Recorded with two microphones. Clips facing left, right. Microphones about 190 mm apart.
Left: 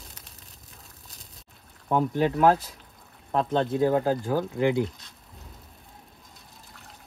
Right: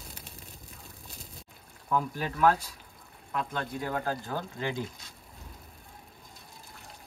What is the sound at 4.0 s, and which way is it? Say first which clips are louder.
Speech: left 8 dB; 15° left (ahead or behind).